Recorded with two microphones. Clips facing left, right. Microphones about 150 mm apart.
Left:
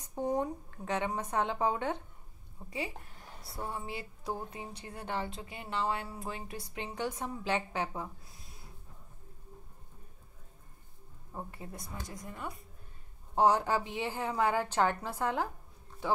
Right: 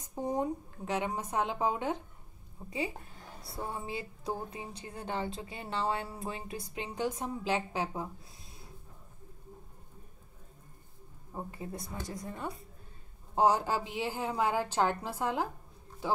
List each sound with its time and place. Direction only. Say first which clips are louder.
0.1 s a woman's voice: even; 10° right (ahead or behind)
3.5 s speech: right 1 dB; 20° right (ahead or behind)
11.3 s speech: right 3 dB; 20° right (ahead or behind)
13.3 s a woman's voice: even; 10° right (ahead or behind)